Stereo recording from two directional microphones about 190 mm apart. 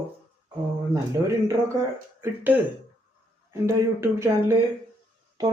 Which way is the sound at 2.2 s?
10° right (ahead or behind).